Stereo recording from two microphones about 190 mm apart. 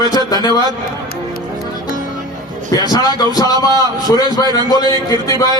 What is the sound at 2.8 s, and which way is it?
Speech, 20° left (ahead or behind).